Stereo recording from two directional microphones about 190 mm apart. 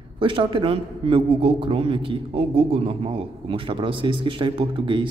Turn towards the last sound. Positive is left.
turn(degrees=-25)  # may be behind; listen again after turning